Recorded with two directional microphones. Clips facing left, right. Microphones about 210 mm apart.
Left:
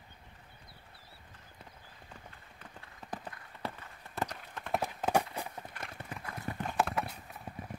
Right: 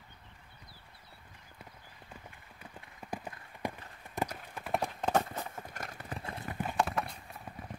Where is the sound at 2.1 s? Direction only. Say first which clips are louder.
Right 2 dB; 10° right (ahead or behind).